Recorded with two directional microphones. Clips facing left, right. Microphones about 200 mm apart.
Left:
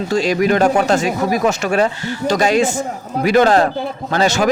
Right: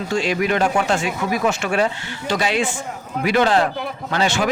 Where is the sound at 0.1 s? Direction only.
40° left (ahead or behind).